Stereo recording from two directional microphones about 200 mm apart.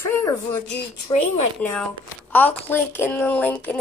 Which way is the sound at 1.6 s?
5° left (ahead or behind).